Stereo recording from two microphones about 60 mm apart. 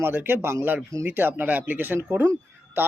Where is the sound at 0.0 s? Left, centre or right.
Right.